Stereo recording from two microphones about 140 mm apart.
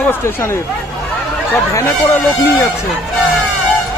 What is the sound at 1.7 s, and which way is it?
Speech, 20° left (ahead or behind).